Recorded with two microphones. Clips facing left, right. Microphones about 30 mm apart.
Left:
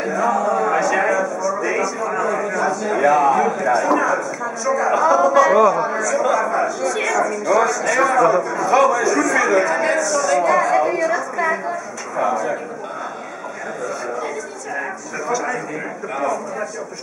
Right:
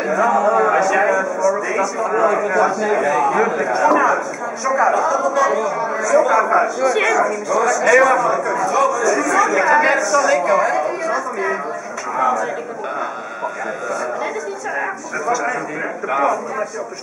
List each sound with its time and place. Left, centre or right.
0.0 s a sound: centre
1.4 s a man's voice: centre
4.9 s speech: centre
5.9 s a man's voice: centre
7.4 s speech: centre
7.8 s a woman's voice: centre
9.7 s a man's voice: centre
10.4 s a woman's voice: centre
14.8 s speech: centre
16.1 s a man's voice: centre